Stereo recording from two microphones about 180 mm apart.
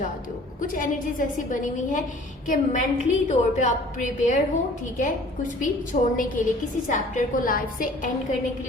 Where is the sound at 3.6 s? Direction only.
40° left (ahead or behind).